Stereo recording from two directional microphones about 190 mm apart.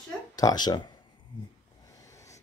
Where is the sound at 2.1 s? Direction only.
15° left (ahead or behind).